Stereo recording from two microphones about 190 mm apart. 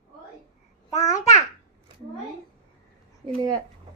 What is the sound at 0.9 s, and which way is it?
Babbling, 35° left (ahead or behind).